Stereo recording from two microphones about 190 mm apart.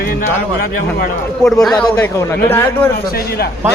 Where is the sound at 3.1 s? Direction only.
55° left (ahead or behind).